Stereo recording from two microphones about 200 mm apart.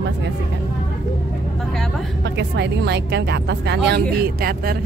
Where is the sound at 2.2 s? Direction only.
60° right (ahead or behind).